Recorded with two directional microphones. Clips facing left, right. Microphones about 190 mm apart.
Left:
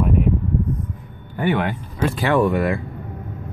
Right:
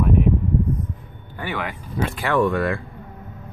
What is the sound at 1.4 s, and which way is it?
Speech, 25° left (ahead or behind).